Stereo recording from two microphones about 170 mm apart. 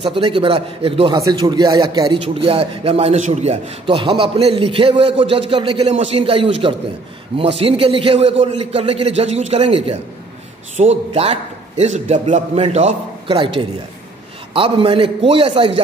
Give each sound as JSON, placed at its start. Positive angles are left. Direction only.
{"t": 0.0, "sound": "a man's voice", "side_deg": -30}